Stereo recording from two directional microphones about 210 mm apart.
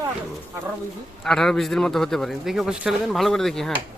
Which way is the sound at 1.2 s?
Centre (ahead or behind).